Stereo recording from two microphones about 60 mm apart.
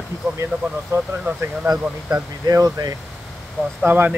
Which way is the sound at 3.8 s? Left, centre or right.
Right.